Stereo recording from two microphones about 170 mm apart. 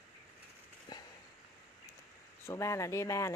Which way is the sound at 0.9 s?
25° left (ahead or behind).